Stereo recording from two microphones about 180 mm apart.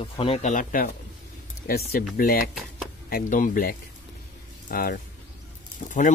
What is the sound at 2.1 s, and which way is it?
Speech, 50° left (ahead or behind).